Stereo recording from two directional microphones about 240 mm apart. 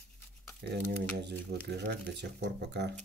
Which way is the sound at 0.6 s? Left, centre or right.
Right.